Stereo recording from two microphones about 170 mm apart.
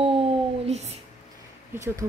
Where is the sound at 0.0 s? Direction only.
35° right (ahead or behind).